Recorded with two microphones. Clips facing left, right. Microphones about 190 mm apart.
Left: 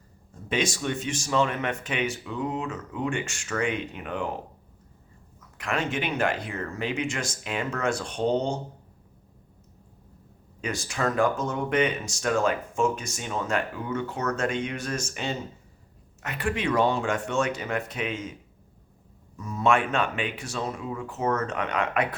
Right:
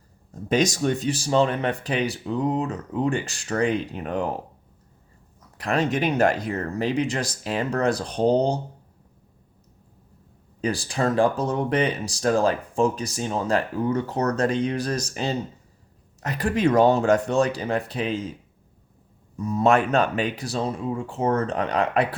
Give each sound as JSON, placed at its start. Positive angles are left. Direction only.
{"t": 0.3, "sound": "speech", "side_deg": -40}
{"t": 5.4, "sound": "speech", "side_deg": -35}
{"t": 10.6, "sound": "speech", "side_deg": -35}
{"t": 19.5, "sound": "speech", "side_deg": -35}